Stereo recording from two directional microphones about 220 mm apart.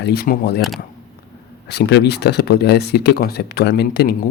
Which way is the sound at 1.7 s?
50° left (ahead or behind).